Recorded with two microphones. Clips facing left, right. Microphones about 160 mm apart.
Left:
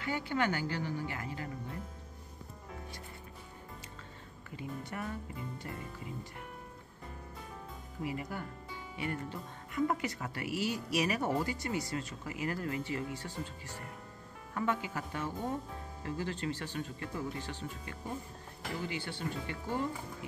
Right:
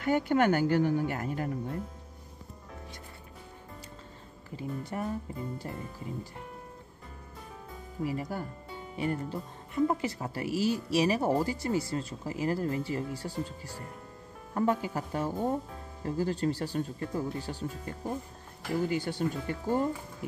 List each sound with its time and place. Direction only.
0.0 s speech: 50° right (ahead or behind)
4.5 s speech: 35° right (ahead or behind)
8.0 s speech: 35° right (ahead or behind)